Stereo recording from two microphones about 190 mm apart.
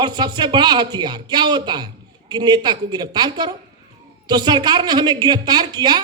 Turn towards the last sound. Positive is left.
turn(degrees=-20)  # may be behind; listen again after turning